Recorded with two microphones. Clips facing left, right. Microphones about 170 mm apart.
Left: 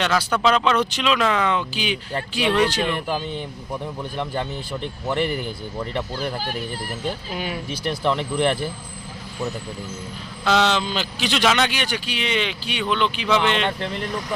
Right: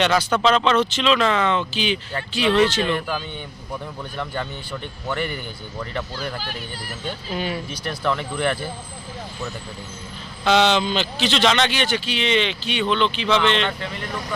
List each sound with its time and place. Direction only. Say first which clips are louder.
0.0 s a man's voice: right 2 dB; centre (ahead or behind)
7.0 s a man's voice: right 2 dB; 10° left (ahead or behind)
7.9 s speech: left 2 dB; 20° left (ahead or behind)
10.4 s a man's voice: right 2 dB; centre (ahead or behind)